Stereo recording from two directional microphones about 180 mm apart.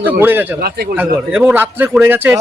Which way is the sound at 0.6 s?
60° right (ahead or behind).